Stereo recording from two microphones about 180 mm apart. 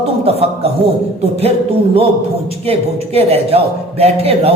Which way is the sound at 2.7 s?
35° right (ahead or behind).